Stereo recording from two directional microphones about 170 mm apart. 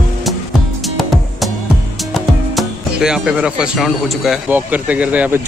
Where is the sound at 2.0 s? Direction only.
Centre (ahead or behind).